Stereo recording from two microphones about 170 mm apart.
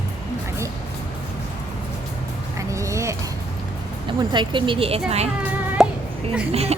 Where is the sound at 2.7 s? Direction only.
15° right (ahead or behind).